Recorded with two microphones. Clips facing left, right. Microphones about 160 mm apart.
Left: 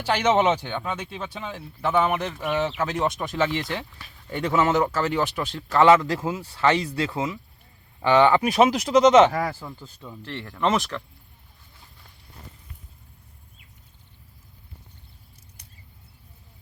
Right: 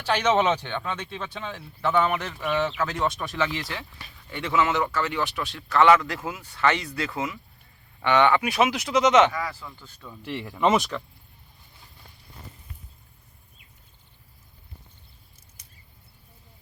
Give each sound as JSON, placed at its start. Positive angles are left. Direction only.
{"t": 0.0, "sound": "speech", "side_deg": 15}
{"t": 4.3, "sound": "speech", "side_deg": 40}
{"t": 9.3, "sound": "speech", "side_deg": 50}
{"t": 9.6, "sound": "speech", "side_deg": 30}
{"t": 10.2, "sound": "speech", "side_deg": -10}
{"t": 15.6, "sound": "a sound", "side_deg": 65}